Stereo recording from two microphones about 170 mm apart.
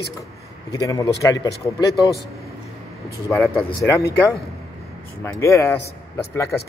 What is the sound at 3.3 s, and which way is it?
Speech, 15° left (ahead or behind).